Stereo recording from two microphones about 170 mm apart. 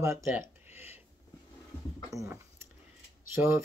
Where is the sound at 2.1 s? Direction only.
15° right (ahead or behind).